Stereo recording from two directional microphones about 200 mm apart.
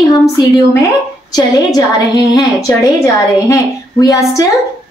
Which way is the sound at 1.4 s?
20° left (ahead or behind).